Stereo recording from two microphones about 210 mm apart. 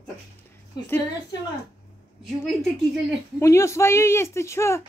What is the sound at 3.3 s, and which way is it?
Speech, 15° left (ahead or behind).